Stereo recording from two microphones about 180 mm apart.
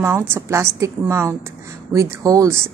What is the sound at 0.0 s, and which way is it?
A woman's voice, 15° right (ahead or behind).